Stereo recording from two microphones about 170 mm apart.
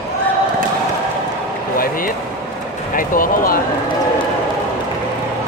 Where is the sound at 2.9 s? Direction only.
55° left (ahead or behind).